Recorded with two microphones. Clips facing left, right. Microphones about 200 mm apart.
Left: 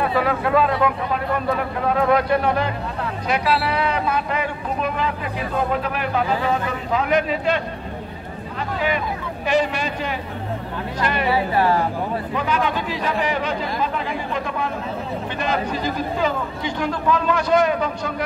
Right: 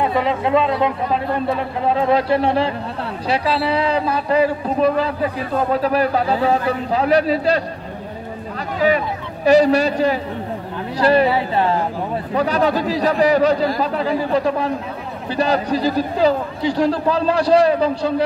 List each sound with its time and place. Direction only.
0.0 s a man's voice: 20° right (ahead or behind)
8.8 s speech: 40° right (ahead or behind)
12.4 s speech: 35° right (ahead or behind)